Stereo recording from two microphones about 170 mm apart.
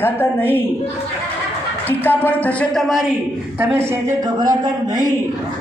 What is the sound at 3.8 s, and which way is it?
Speech, 20° right (ahead or behind).